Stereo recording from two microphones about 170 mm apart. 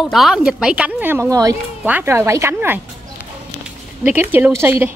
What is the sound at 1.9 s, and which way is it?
Speech, 10° right (ahead or behind).